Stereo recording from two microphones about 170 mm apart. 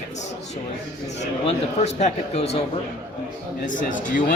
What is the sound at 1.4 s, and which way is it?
Speech, 40° left (ahead or behind).